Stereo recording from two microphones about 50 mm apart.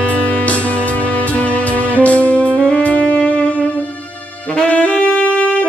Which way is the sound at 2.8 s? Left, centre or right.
Left.